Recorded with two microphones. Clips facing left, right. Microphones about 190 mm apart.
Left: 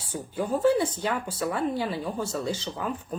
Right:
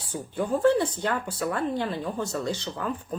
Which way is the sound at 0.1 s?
10° left (ahead or behind).